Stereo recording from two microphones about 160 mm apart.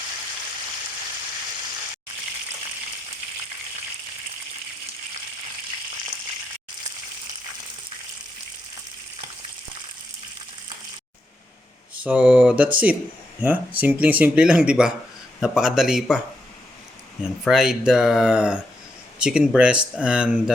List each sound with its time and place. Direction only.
12.0 s a sound: 10° right (ahead or behind)
12.7 s speech: 10° right (ahead or behind)
17.4 s speech: 5° right (ahead or behind)